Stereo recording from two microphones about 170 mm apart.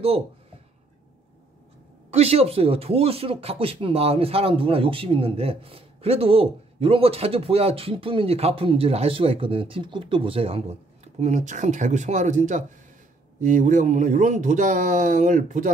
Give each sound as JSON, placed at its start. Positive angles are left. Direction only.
{"t": 2.1, "sound": "speech", "side_deg": -35}